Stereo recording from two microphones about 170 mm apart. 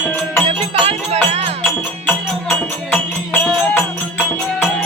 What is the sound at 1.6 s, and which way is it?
Music, 5° left (ahead or behind).